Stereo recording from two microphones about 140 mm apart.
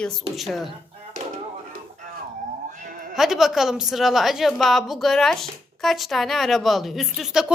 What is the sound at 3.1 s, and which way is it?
A woman's voice, centre (ahead or behind).